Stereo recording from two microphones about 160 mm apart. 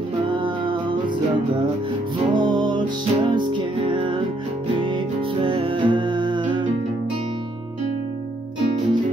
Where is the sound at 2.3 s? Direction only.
25° right (ahead or behind).